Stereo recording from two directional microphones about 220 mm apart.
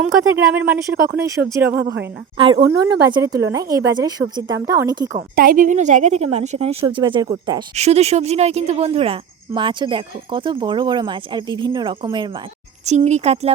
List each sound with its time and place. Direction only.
0.0 s speech: 5° right (ahead or behind)
1.7 s speech: 45° right (ahead or behind)
2.6 s speech: 15° right (ahead or behind)
5.1 s a woman's voice: 40° right (ahead or behind)
6.8 s speech: 20° right (ahead or behind)
7.8 s speech: 30° right (ahead or behind)
12.8 s a woman's voice: 30° right (ahead or behind)